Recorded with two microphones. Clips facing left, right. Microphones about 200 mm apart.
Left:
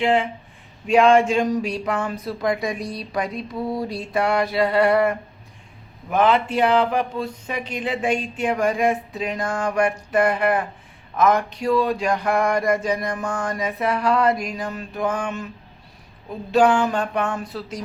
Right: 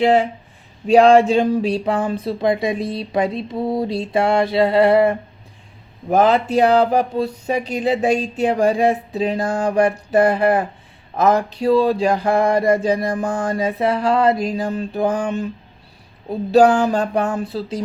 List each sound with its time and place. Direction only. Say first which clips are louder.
0.0 s speech: right 5 dB; 35° right (ahead or behind)
2.2 s a sound: right 4 dB; 25° right (ahead or behind)
6.1 s speech: right 4 dB; 40° right (ahead or behind)